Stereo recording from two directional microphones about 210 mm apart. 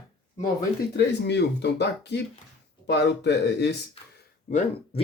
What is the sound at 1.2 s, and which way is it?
Speech, 55° left (ahead or behind).